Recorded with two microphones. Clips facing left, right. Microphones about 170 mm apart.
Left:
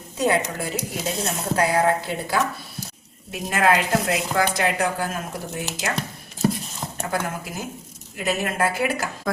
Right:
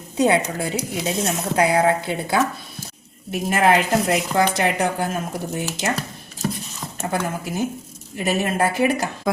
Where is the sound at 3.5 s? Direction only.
30° right (ahead or behind).